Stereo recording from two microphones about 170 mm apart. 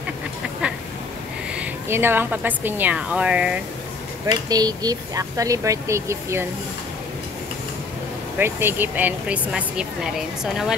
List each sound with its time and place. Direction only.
1.5 s speech: 10° right (ahead or behind)
4.3 s speech: 25° right (ahead or behind)
8.4 s speech: 15° right (ahead or behind)